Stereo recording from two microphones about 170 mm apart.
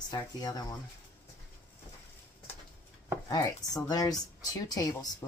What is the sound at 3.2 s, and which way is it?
Speech, 20° left (ahead or behind).